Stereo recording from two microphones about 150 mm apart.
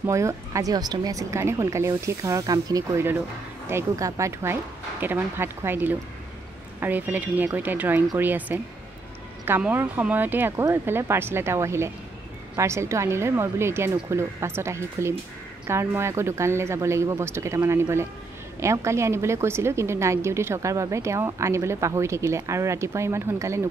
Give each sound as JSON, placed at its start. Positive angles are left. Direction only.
{"t": 0.0, "sound": "a woman's voice", "side_deg": -20}